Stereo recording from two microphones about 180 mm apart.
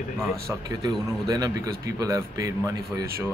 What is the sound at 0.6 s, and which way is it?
A man's voice, 20° right (ahead or behind).